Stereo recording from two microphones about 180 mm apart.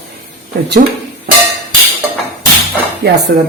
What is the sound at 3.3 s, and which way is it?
Speech, 50° right (ahead or behind).